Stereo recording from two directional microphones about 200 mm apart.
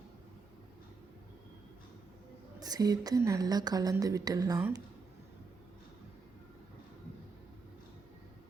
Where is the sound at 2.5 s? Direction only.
20° right (ahead or behind).